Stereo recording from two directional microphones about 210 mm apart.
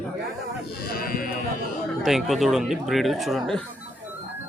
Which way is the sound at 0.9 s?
45° left (ahead or behind).